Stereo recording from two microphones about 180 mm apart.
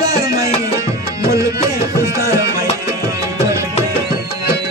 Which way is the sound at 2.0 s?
15° right (ahead or behind).